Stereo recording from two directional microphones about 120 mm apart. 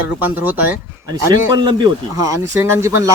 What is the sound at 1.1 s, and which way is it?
Speech, 35° right (ahead or behind).